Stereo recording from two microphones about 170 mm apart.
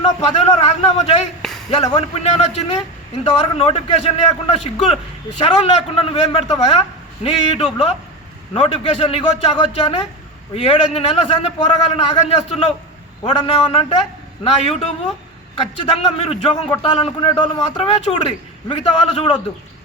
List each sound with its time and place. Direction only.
0.6 s a man's voice: 40° left (ahead or behind)
15.9 s a man's voice: 35° left (ahead or behind)